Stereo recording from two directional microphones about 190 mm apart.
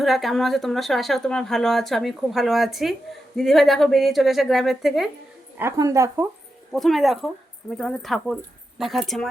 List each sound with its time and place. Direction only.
0.0 s speech: centre (ahead or behind)
5.5 s a woman's voice: 15° right (ahead or behind)
6.7 s speech: centre (ahead or behind)